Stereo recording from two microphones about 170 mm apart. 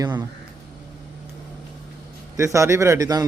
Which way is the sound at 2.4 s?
15° right (ahead or behind).